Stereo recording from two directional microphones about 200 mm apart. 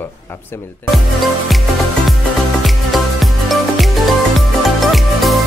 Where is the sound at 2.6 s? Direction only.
Centre (ahead or behind).